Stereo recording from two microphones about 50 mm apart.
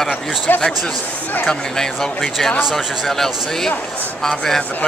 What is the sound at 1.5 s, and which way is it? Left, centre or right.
A man's voice, centre.